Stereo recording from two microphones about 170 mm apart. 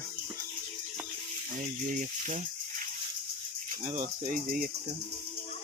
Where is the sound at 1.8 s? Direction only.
50° right (ahead or behind).